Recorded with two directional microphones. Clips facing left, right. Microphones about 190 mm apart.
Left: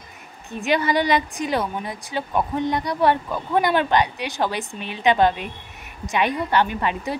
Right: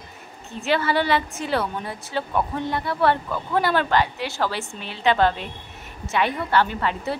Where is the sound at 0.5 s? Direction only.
15° left (ahead or behind).